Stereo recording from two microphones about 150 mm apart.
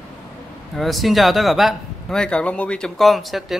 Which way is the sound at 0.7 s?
Centre (ahead or behind).